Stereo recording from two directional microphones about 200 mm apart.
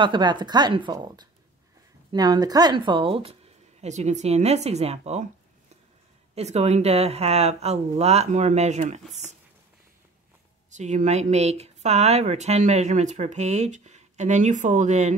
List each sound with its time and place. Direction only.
0.0 s speech: 25° right (ahead or behind)
6.3 s speech: 35° right (ahead or behind)
10.7 s speech: 35° right (ahead or behind)